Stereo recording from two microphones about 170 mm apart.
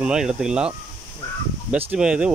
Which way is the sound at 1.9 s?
5° right (ahead or behind).